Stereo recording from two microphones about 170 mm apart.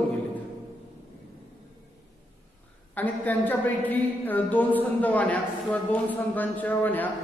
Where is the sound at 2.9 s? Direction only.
10° left (ahead or behind).